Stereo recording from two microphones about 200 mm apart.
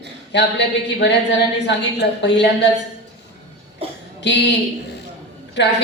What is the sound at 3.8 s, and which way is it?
Cough, 30° right (ahead or behind).